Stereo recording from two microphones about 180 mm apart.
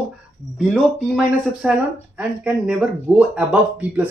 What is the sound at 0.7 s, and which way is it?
Speech, 5° right (ahead or behind).